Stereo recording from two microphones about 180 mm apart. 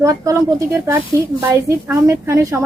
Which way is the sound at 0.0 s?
15° right (ahead or behind).